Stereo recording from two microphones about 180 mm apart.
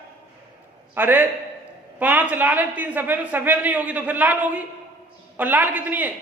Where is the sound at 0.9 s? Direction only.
10° right (ahead or behind).